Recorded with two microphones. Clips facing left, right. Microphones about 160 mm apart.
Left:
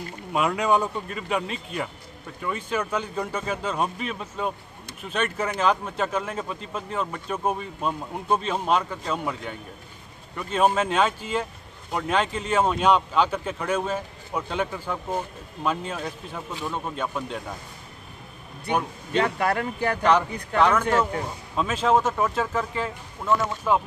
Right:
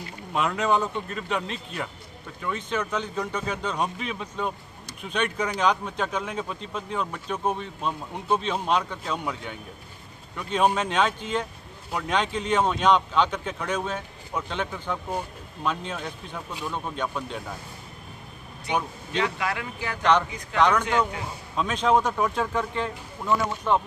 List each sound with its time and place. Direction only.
0.3 s speech: 10° left (ahead or behind)
19.1 s speech: 50° left (ahead or behind)
20.0 s speech: 10° left (ahead or behind)